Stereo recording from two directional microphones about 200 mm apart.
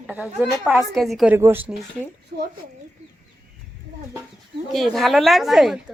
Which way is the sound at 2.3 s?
45° right (ahead or behind).